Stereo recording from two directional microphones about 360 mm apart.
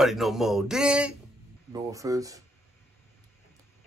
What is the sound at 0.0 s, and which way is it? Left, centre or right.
Speech, centre.